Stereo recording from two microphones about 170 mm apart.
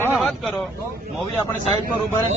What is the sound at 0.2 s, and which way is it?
Vehicle, centre (ahead or behind).